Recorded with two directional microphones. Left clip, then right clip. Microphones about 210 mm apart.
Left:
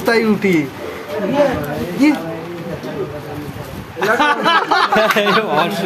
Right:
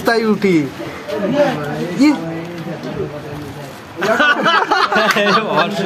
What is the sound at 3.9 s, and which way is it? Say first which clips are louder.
Speech: even; 5° left (ahead or behind).